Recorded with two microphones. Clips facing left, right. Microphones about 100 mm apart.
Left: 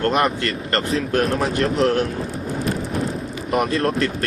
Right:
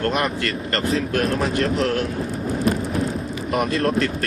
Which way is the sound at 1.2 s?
Centre (ahead or behind).